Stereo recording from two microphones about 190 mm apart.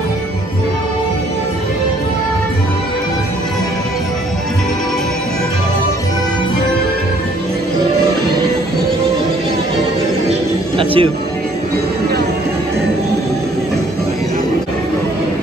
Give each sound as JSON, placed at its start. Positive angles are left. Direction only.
{"t": 10.8, "sound": "music", "side_deg": -30}